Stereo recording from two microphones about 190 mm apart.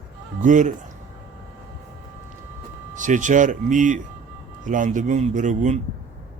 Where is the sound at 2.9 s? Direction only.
40° right (ahead or behind).